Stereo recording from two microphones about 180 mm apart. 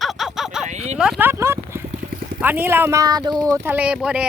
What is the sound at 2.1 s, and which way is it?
Vehicle, 55° right (ahead or behind).